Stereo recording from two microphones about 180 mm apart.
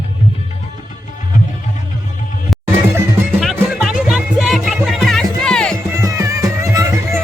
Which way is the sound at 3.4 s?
Centre (ahead or behind).